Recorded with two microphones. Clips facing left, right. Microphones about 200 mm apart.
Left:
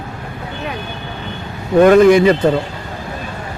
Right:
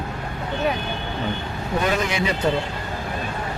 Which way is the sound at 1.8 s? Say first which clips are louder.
Left 16 dB; 50° left (ahead or behind).